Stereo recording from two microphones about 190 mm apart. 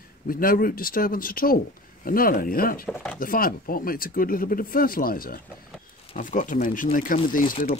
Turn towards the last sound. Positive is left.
turn(degrees=45)  # may be behind; listen again after turning